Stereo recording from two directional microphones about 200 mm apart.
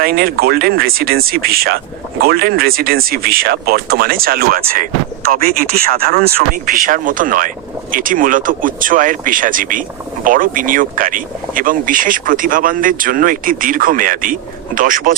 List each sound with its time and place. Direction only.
0.0 s speech: 50° right (ahead or behind)